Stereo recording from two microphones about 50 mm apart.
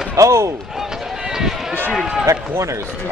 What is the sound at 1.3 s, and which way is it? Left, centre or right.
Run, centre.